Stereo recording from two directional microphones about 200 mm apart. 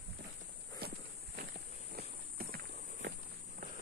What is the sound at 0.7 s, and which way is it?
Walk, 50° right (ahead or behind).